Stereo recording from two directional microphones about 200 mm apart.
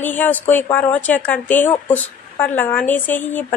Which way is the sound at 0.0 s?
10° left (ahead or behind).